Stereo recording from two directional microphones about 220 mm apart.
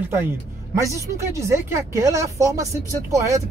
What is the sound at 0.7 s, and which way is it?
Speech, 15° right (ahead or behind).